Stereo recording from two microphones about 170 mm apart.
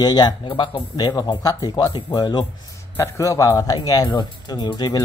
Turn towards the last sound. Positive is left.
turn(degrees=25)  # may be behind; listen again after turning